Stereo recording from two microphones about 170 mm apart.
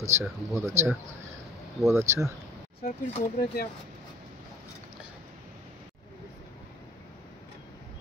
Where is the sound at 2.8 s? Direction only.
40° left (ahead or behind).